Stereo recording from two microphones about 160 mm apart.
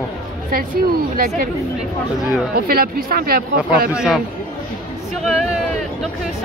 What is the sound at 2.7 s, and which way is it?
Speech, 70° right (ahead or behind).